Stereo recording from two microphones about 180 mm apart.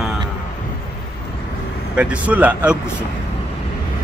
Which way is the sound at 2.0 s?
5° right (ahead or behind).